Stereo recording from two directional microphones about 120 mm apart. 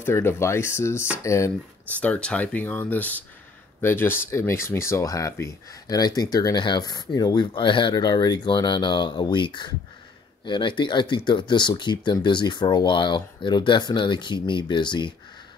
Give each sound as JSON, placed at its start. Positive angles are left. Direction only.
{"t": 0.0, "sound": "speech", "side_deg": 20}
{"t": 2.0, "sound": "speech", "side_deg": 10}